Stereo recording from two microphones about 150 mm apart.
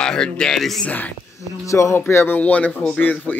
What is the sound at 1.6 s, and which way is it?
Speech, 20° left (ahead or behind).